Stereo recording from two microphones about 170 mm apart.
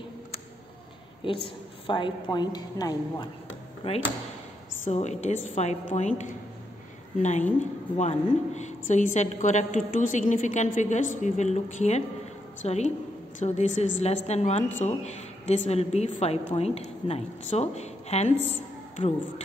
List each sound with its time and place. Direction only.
1.2 s a woman's voice: 30° left (ahead or behind)